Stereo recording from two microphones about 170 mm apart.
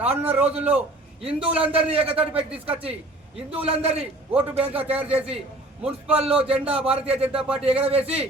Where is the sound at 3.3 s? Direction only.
35° right (ahead or behind).